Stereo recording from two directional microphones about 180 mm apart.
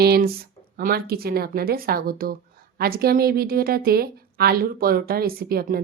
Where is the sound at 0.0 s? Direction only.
60° right (ahead or behind).